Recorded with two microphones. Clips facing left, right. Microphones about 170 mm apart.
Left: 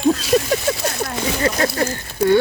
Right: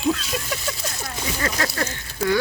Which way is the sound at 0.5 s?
65° left (ahead or behind).